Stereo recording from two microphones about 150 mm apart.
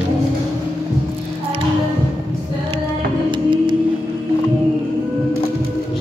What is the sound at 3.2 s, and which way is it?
Music, 30° right (ahead or behind).